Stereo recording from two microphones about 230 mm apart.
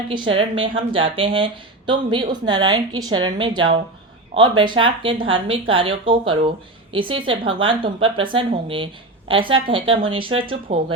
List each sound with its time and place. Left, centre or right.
0.1 s a woman's voice: right